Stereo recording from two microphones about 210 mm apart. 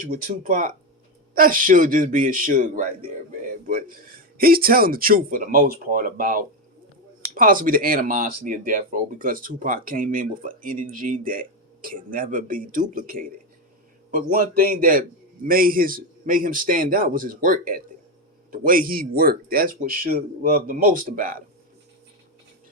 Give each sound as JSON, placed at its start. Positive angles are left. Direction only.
{"t": 0.0, "sound": "speech", "side_deg": -40}